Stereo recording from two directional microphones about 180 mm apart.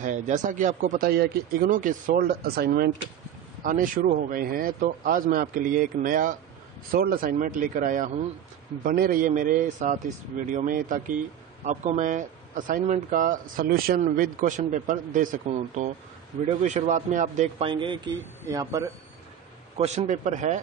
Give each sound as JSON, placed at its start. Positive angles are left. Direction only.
{"t": 0.0, "sound": "speech", "side_deg": -45}
{"t": 17.6, "sound": "speech", "side_deg": -25}
{"t": 19.8, "sound": "speech", "side_deg": -40}